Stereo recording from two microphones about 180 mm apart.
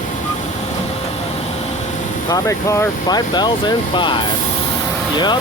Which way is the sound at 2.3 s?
20° left (ahead or behind).